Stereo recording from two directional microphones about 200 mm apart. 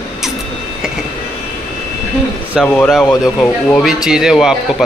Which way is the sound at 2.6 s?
Centre (ahead or behind).